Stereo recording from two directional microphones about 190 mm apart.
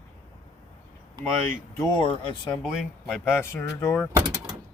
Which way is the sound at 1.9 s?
25° left (ahead or behind).